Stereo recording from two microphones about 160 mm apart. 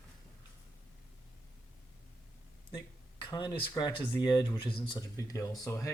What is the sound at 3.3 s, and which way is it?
Speech, 30° left (ahead or behind).